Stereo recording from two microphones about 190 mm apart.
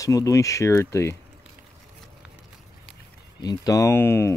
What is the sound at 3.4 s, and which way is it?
Speech, 20° left (ahead or behind).